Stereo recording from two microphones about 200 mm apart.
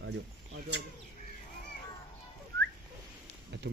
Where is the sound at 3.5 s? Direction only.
60° right (ahead or behind).